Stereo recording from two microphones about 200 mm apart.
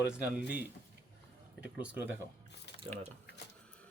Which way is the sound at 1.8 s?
10° right (ahead or behind).